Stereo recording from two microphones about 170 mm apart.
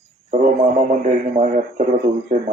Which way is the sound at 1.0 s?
50° right (ahead or behind).